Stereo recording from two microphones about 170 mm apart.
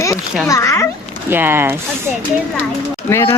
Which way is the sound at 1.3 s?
10° right (ahead or behind).